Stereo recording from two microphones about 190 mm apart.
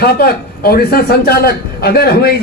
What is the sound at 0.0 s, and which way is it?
A man's voice, 55° left (ahead or behind).